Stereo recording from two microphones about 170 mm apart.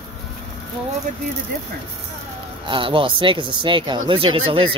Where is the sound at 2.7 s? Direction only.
30° right (ahead or behind).